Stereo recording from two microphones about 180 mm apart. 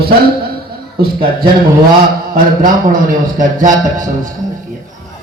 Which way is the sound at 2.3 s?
50° right (ahead or behind).